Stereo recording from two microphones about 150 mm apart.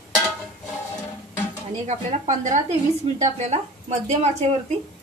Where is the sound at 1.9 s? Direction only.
50° right (ahead or behind).